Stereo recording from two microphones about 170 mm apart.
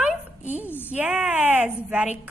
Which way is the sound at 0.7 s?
10° left (ahead or behind).